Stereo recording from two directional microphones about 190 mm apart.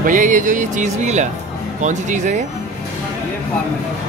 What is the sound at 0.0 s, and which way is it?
Speech, 40° right (ahead or behind).